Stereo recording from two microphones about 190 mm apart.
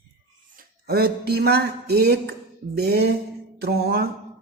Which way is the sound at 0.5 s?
55° right (ahead or behind).